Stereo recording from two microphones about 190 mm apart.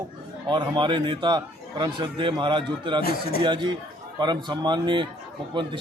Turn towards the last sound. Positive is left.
turn(degrees=-25)  # may be behind; listen again after turning